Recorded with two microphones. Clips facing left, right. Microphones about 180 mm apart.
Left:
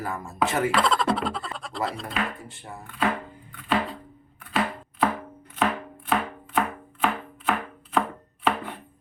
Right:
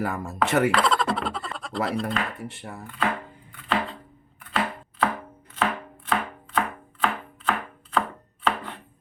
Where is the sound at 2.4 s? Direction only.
70° right (ahead or behind).